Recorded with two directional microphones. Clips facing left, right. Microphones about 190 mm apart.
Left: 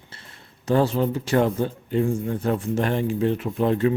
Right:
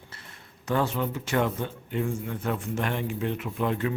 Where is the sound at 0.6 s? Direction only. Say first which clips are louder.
Left 6 dB; 35° left (ahead or behind).